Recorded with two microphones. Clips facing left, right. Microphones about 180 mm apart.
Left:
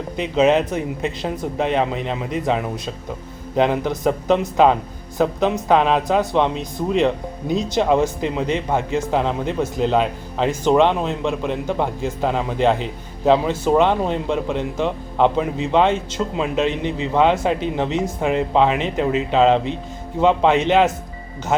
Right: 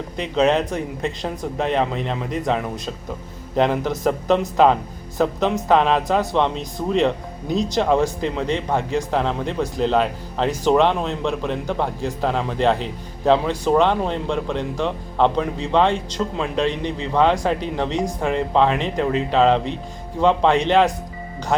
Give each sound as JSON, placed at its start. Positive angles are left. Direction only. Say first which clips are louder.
{"t": 0.2, "sound": "speech", "louder": "left 2 dB", "side_deg": 5}